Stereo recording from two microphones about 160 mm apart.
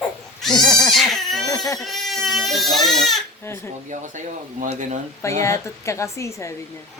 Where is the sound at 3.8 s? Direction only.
50° right (ahead or behind).